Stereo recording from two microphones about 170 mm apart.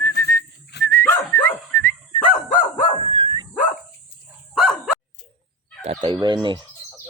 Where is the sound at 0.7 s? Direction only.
80° left.